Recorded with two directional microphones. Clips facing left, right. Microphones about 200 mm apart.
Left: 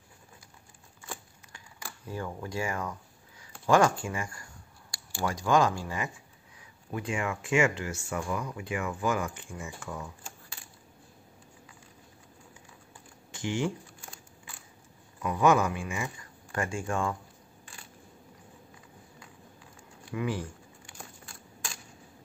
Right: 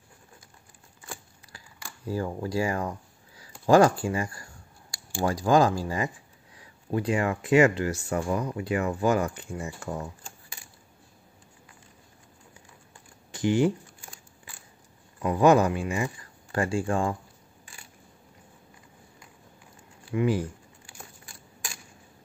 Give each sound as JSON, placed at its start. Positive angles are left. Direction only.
{"t": 2.0, "sound": "speech", "side_deg": -30}
{"t": 13.3, "sound": "speech", "side_deg": -35}
{"t": 15.2, "sound": "speech", "side_deg": -35}
{"t": 20.1, "sound": "speech", "side_deg": -30}